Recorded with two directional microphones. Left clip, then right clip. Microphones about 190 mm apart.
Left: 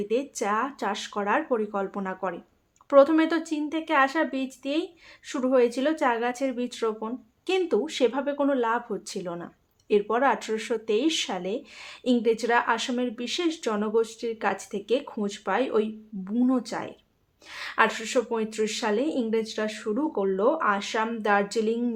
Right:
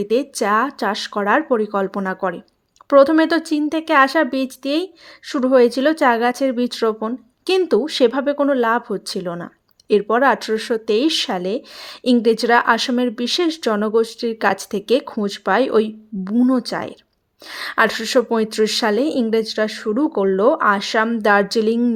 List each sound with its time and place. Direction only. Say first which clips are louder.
0.0 s speech: right 8 dB; 35° right (ahead or behind)